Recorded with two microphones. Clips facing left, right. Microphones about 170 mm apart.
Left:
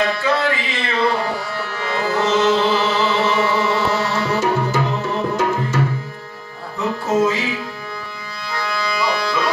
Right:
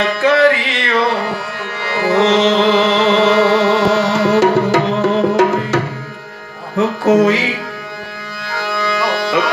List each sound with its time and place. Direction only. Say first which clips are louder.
0.2 s a sound: right 8 dB; 75° right (ahead or behind)
1.9 s music: right 6 dB; 90° right
6.8 s music: right 6 dB; 90° right
8.5 s music: right 4 dB; 90° right